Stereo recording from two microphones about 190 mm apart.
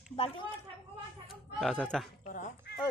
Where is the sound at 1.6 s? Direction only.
5° left (ahead or behind).